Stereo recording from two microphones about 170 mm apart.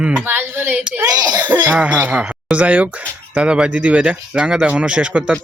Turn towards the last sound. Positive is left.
turn(degrees=-5)  # may be behind; listen again after turning